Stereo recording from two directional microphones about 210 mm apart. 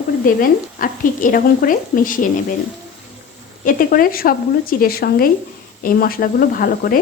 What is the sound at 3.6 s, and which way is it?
Speech, 40° left (ahead or behind).